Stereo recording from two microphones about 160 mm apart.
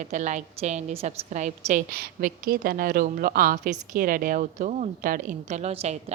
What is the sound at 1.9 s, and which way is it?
Speech, 65° right (ahead or behind).